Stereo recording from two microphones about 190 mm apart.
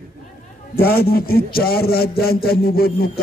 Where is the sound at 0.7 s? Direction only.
55° left (ahead or behind).